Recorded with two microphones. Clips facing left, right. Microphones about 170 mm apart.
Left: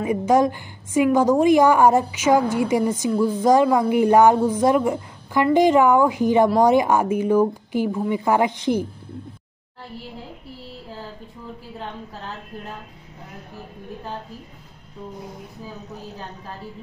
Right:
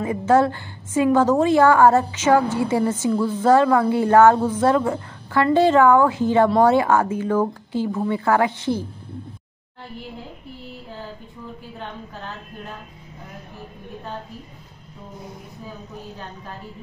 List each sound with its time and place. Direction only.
0.0 s a woman's voice: 15° left (ahead or behind)